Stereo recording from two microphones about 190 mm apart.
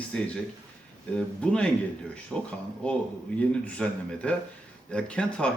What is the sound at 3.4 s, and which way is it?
A man's voice, 5° left (ahead or behind).